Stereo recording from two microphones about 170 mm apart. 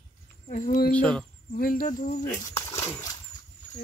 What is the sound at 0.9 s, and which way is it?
Speech, 5° left (ahead or behind).